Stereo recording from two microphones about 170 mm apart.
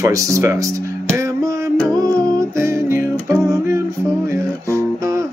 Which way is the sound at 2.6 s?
15° right (ahead or behind).